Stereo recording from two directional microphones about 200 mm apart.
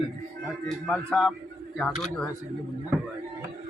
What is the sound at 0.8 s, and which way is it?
Speech, 5° left (ahead or behind).